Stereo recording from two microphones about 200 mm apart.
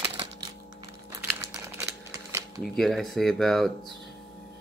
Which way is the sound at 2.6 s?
Centre (ahead or behind).